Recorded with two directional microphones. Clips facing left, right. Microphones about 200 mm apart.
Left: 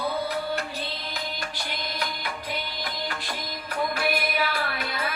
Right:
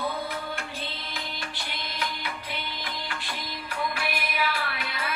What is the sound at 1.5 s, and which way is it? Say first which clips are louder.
Music: left 3 dB; 40° left (ahead or behind).